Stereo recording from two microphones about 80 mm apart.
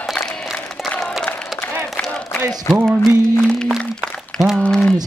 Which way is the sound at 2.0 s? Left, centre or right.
Centre.